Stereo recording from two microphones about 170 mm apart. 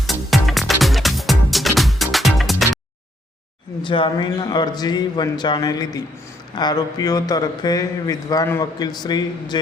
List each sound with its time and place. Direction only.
0.1 s music: centre (ahead or behind)
3.8 s a man's voice: 30° left (ahead or behind)